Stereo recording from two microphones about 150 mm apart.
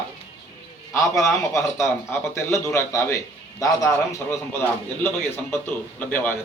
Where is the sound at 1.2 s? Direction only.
20° left (ahead or behind).